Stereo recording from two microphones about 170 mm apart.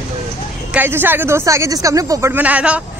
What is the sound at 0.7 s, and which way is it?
Speech, 10° right (ahead or behind).